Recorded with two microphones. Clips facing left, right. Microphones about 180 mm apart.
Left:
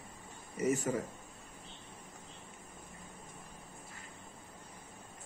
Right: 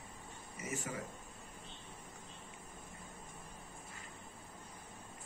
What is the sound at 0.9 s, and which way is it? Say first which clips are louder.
Speech: left 9 dB; 40° left (ahead or behind).